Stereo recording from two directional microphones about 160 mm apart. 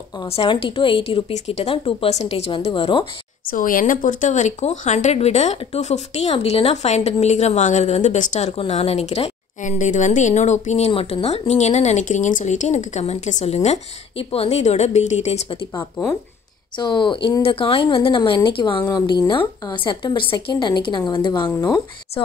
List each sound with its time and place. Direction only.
0.2 s a woman's voice: 35° left (ahead or behind)
3.4 s speech: 60° left (ahead or behind); by 15.6 s 40° left (ahead or behind)
16.7 s a woman's voice: 30° left (ahead or behind)